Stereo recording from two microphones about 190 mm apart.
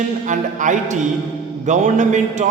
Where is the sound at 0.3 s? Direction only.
40° right (ahead or behind).